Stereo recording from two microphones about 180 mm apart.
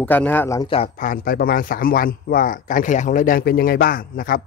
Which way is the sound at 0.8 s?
50° left (ahead or behind).